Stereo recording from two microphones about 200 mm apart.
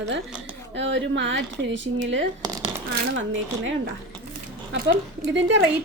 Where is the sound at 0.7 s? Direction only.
65° right (ahead or behind).